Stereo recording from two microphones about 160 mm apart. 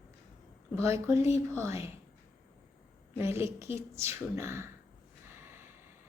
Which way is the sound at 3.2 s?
15° right (ahead or behind).